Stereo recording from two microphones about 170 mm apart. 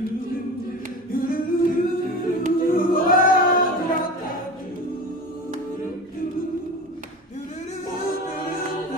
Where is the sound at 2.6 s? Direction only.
55° left (ahead or behind).